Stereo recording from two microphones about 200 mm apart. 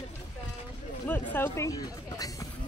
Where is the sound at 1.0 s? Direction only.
10° left (ahead or behind).